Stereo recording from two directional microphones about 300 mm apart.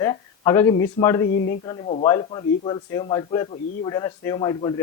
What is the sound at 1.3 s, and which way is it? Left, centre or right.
Speech, left.